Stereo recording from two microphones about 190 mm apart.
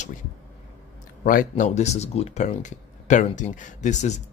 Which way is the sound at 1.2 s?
45° left (ahead or behind).